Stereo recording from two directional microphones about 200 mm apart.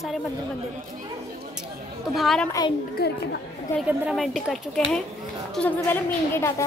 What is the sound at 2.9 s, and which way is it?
Speech, 55° left (ahead or behind).